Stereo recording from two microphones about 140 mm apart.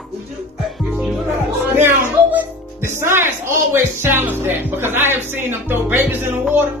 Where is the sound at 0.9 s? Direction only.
5° right (ahead or behind).